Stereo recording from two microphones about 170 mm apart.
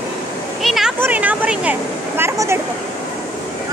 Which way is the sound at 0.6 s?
Centre (ahead or behind).